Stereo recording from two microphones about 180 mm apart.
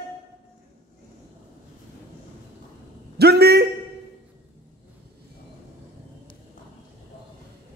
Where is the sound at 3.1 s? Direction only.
65° right (ahead or behind).